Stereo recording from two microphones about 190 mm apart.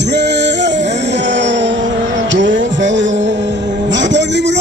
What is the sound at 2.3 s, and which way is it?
Music, 75° right (ahead or behind).